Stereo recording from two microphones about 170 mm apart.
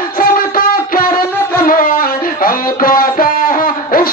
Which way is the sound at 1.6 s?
55° left (ahead or behind).